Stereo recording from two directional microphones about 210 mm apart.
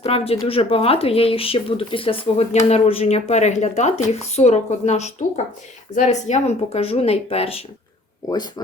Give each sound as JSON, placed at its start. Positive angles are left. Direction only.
{"t": 0.0, "sound": "speech", "side_deg": 30}